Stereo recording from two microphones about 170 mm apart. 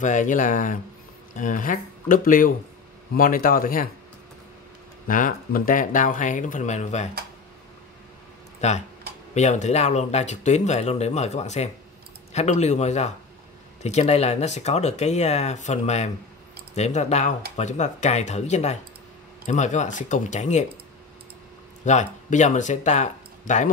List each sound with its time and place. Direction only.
0.0 s a man's voice: 50° left (ahead or behind)
5.0 s speech: 55° left (ahead or behind)
8.5 s speech: 40° left (ahead or behind)
21.8 s speech: 45° left (ahead or behind)